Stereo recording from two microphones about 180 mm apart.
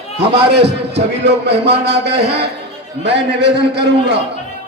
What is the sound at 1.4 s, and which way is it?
A man's voice, 65° right (ahead or behind).